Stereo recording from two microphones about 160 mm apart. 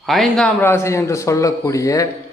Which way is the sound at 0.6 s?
15° left (ahead or behind).